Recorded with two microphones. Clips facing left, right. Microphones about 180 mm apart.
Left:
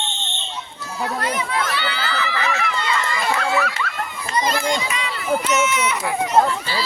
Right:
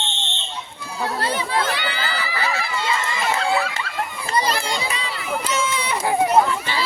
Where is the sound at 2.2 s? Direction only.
35° right (ahead or behind).